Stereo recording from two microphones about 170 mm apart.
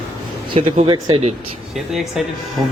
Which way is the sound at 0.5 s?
30° right (ahead or behind).